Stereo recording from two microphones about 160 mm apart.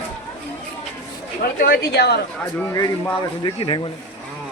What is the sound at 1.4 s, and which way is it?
Speech, 70° left (ahead or behind).